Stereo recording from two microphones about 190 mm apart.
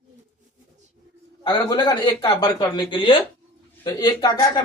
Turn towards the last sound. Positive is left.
turn(degrees=20)  # may be behind; listen again after turning